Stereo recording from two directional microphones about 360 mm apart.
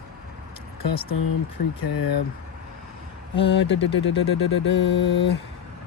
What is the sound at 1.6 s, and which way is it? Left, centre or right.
Speech, left.